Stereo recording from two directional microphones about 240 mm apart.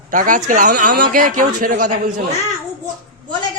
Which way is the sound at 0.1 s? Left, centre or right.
Right.